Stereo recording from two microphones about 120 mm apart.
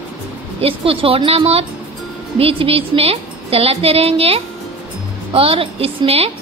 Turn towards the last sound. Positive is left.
turn(degrees=-55)  # may be behind; listen again after turning